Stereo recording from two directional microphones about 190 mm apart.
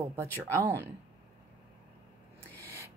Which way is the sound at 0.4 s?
15° right (ahead or behind).